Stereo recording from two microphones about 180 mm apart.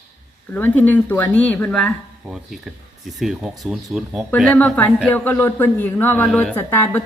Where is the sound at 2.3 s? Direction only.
Centre (ahead or behind).